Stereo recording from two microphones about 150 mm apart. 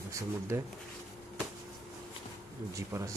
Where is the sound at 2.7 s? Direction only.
20° right (ahead or behind).